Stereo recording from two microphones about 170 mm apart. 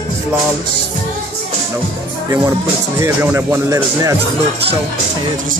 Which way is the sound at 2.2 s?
15° right (ahead or behind).